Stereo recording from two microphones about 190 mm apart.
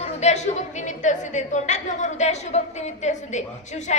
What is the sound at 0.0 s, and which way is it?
A woman's voice, 35° left (ahead or behind).